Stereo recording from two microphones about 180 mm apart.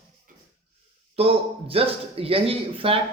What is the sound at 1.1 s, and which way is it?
A man's voice, 30° right (ahead or behind).